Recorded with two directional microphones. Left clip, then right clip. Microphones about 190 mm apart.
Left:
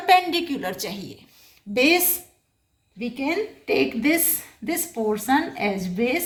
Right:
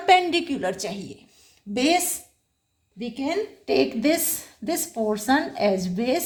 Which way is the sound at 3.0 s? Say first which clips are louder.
Left 1 dB; 60° right (ahead or behind).